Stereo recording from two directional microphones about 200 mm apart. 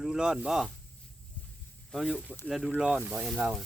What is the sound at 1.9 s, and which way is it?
Speech, centre (ahead or behind).